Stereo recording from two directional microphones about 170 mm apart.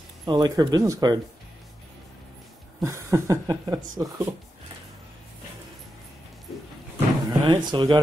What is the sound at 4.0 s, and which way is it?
Speech, 20° right (ahead or behind).